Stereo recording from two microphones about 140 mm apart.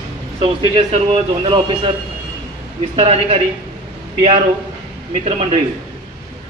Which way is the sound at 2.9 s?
40° right (ahead or behind).